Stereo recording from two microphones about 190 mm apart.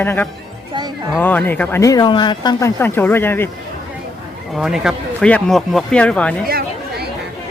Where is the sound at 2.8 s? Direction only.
10° left (ahead or behind).